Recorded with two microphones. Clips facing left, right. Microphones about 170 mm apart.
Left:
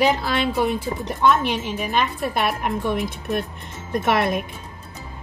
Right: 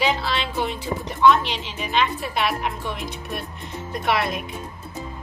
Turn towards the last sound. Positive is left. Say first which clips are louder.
# left 3 dB
turn(degrees=50)  # may be behind; listen again after turning